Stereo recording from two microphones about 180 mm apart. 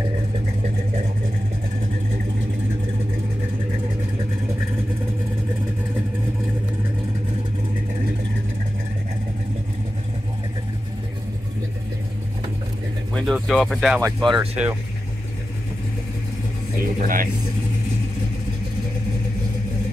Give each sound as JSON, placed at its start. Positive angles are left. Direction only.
{"t": 13.1, "sound": "speech", "side_deg": 0}
{"t": 16.8, "sound": "speech", "side_deg": -50}